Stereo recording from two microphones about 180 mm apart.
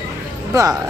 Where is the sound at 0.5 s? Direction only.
20° right (ahead or behind).